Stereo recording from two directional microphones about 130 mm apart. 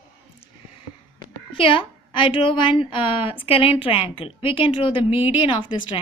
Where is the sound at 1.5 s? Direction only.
45° left (ahead or behind).